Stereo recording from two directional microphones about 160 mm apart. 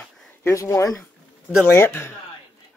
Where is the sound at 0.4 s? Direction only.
20° left (ahead or behind).